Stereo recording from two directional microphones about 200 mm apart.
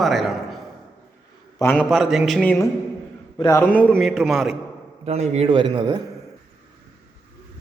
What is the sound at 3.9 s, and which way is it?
Speech, centre (ahead or behind).